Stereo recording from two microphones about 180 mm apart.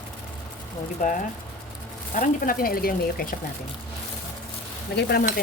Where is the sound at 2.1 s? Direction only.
50° left (ahead or behind).